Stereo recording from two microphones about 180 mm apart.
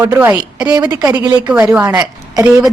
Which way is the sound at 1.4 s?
10° right (ahead or behind).